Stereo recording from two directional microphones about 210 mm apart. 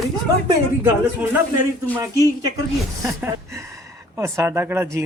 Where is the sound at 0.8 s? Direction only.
10° right (ahead or behind).